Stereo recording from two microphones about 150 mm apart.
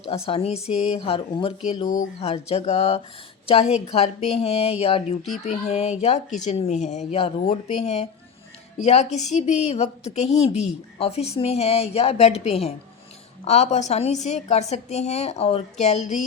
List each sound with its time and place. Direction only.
0.1 s speech: 40° left (ahead or behind)